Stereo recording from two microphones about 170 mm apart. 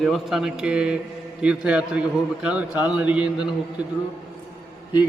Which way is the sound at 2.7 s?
25° left (ahead or behind).